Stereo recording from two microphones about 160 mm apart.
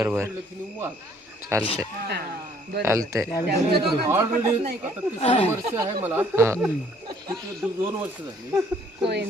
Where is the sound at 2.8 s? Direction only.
20° right (ahead or behind).